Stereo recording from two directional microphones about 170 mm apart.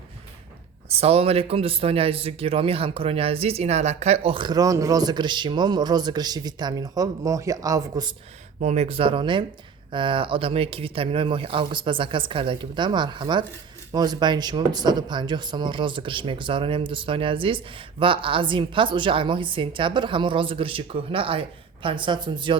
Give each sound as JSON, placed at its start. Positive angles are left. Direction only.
{"t": 0.9, "sound": "a man's voice", "side_deg": -35}
{"t": 8.6, "sound": "a man's voice", "side_deg": -40}